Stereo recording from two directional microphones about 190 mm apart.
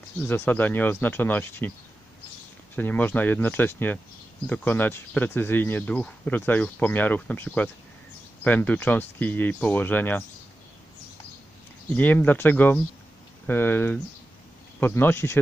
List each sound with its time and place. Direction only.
0.3 s speech: 10° left (ahead or behind)
2.7 s speech: 10° left (ahead or behind)
12.0 s speech: 10° left (ahead or behind)